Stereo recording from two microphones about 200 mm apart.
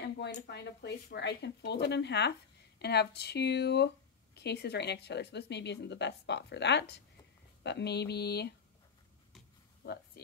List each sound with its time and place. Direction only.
0.0 s a woman's voice: 60° left (ahead or behind)
10.2 s speech: 55° left (ahead or behind)